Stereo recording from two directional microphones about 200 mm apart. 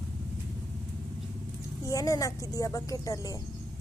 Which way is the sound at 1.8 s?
15° left (ahead or behind).